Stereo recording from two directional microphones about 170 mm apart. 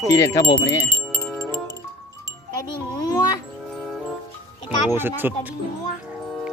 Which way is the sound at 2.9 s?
20° left (ahead or behind).